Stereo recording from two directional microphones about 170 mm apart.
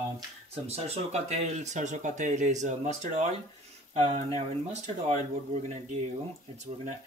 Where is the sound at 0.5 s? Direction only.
40° right (ahead or behind).